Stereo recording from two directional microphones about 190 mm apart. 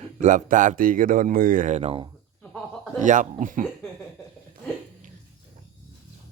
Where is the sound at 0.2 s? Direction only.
40° right (ahead or behind).